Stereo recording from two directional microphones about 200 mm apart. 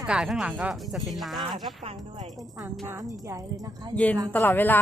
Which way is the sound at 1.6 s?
30° right (ahead or behind).